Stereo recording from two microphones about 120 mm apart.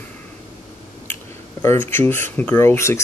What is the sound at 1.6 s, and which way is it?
Speech, 15° left (ahead or behind).